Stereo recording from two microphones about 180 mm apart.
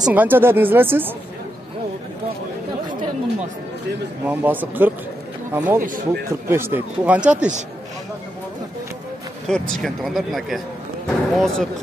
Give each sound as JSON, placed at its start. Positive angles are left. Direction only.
{"t": 0.0, "sound": "speech", "side_deg": -10}
{"t": 4.3, "sound": "speech", "side_deg": -10}
{"t": 5.8, "sound": "speech", "side_deg": -50}
{"t": 6.5, "sound": "speech", "side_deg": -10}
{"t": 9.5, "sound": "speech", "side_deg": 0}